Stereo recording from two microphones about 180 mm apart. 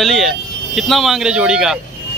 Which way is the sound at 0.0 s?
Centre (ahead or behind).